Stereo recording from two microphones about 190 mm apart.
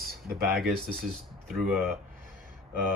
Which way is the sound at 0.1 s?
55° right (ahead or behind).